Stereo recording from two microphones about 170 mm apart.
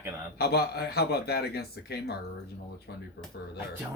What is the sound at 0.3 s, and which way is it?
Speech, 70° left (ahead or behind).